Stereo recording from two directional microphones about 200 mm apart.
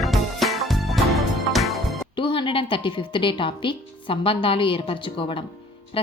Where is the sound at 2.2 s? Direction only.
25° left (ahead or behind).